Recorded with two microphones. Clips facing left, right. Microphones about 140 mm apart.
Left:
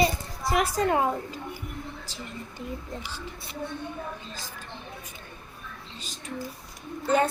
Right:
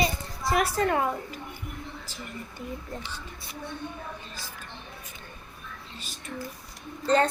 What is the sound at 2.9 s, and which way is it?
Child singing, 20° left (ahead or behind).